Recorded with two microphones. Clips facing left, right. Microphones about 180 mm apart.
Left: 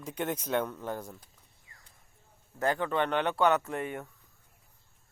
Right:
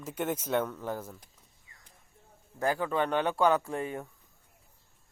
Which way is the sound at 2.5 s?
10° right (ahead or behind).